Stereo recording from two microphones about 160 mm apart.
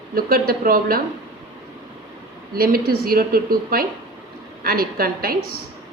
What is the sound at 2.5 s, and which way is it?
A woman's voice, 65° right (ahead or behind).